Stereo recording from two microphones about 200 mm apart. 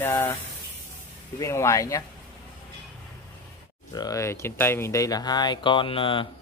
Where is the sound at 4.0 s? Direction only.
15° left (ahead or behind).